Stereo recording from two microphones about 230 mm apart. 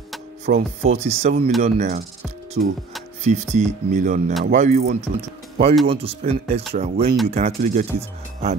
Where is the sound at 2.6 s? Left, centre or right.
Right.